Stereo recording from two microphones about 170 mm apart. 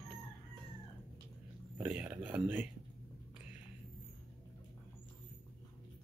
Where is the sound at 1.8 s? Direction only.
10° right (ahead or behind).